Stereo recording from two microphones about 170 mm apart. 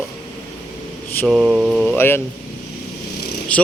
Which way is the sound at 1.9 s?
15° left (ahead or behind).